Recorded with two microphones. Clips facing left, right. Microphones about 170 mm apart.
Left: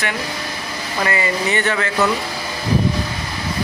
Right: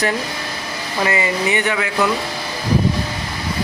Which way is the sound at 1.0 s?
20° right (ahead or behind).